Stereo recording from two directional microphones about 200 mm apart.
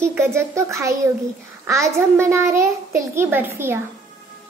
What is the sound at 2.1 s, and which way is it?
A child's voice, 15° right (ahead or behind).